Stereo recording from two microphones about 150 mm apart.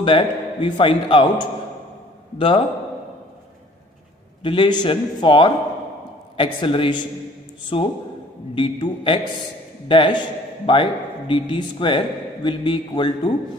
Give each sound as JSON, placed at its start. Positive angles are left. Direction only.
{"t": 0.0, "sound": "a man's voice", "side_deg": 35}
{"t": 4.4, "sound": "a man's voice", "side_deg": 35}